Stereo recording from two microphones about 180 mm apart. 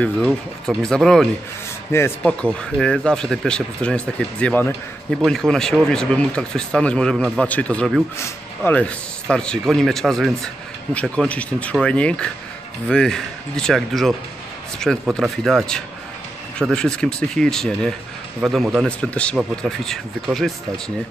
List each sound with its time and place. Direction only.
0.0 s a man's voice: centre (ahead or behind)
1.9 s a man's voice: 15° left (ahead or behind)